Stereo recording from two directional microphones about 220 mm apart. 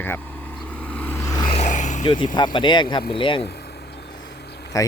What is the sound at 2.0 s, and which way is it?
Speech, 20° left (ahead or behind).